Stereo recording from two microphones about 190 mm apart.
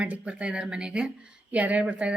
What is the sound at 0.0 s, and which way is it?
Speech, 5° right (ahead or behind).